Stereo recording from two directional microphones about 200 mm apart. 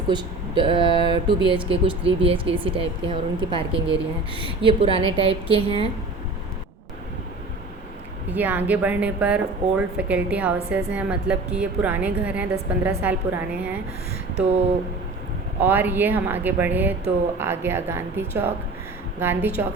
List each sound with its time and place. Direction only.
0.1 s speech: 25° right (ahead or behind)
8.3 s a woman's voice: 10° right (ahead or behind)
15.6 s a woman's voice: 10° right (ahead or behind)